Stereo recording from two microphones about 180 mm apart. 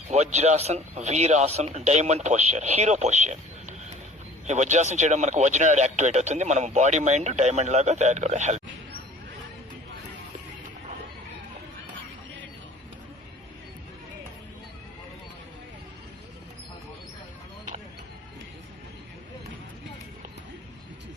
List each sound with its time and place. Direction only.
0.1 s speech: 40° right (ahead or behind)